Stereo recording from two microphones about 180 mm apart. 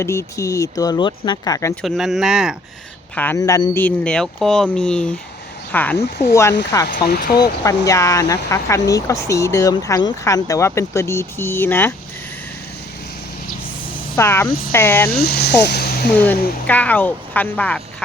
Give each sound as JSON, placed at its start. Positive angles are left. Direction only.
{"t": 0.0, "sound": "speech", "side_deg": 15}
{"t": 1.7, "sound": "speech", "side_deg": 0}
{"t": 3.2, "sound": "speech", "side_deg": 15}
{"t": 6.8, "sound": "speech", "side_deg": 60}
{"t": 7.6, "sound": "speech", "side_deg": 15}
{"t": 14.2, "sound": "speech", "side_deg": 15}
{"t": 15.1, "sound": "speech", "side_deg": 60}
{"t": 15.6, "sound": "music", "side_deg": 60}
{"t": 16.1, "sound": "speech", "side_deg": 10}